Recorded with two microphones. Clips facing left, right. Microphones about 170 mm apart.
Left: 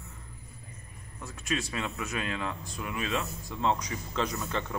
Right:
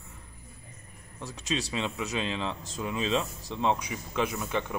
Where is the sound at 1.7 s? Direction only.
20° right (ahead or behind).